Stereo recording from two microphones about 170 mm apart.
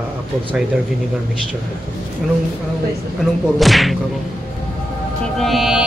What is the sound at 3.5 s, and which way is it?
Speech, centre (ahead or behind).